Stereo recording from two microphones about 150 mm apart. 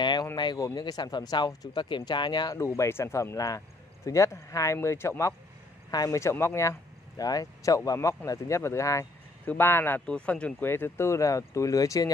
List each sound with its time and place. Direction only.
0.0 s a sound: 30° left (ahead or behind)
0.4 s speech: 25° left (ahead or behind)
2.5 s speech: 20° left (ahead or behind)